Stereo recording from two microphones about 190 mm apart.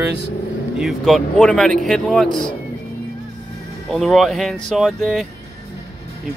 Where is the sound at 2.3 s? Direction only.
25° left (ahead or behind).